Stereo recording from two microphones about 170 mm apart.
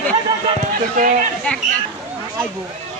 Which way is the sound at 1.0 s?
50° right (ahead or behind).